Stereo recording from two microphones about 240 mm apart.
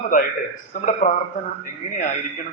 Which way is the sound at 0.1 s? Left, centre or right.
Left.